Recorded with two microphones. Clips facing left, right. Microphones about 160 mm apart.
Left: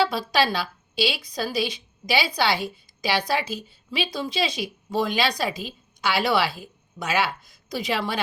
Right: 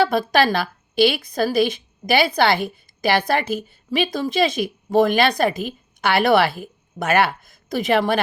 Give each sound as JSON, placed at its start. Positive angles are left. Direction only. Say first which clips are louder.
{"t": 0.0, "sound": "a woman's voice", "louder": "right 5 dB", "side_deg": -55}